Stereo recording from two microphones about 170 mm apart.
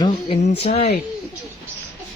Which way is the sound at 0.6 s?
40° left (ahead or behind).